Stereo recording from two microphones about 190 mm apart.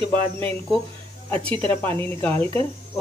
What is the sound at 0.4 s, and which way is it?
Speech, 10° left (ahead or behind).